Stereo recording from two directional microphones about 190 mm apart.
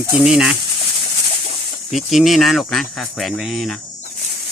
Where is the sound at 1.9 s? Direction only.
Centre (ahead or behind).